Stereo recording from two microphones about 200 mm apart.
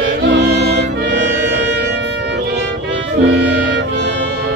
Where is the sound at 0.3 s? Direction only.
60° right (ahead or behind).